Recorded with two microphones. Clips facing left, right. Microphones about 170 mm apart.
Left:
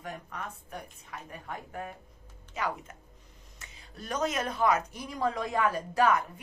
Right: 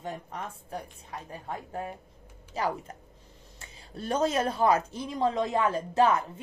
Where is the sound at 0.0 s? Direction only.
30° right (ahead or behind).